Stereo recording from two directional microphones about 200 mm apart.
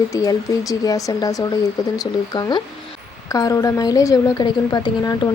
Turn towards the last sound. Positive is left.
turn(degrees=20)  # may be behind; listen again after turning